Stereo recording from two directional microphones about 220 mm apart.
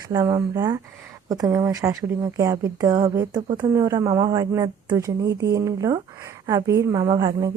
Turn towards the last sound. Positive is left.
turn(degrees=-20)  # may be behind; listen again after turning